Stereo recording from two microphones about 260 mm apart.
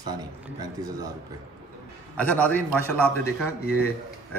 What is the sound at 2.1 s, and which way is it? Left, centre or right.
A man's voice, centre.